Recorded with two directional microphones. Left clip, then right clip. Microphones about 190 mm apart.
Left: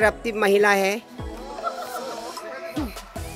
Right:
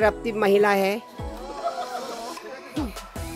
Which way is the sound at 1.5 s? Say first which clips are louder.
Right 1 dB; centre (ahead or behind).